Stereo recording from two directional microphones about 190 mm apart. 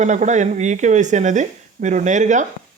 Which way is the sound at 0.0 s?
40° right (ahead or behind).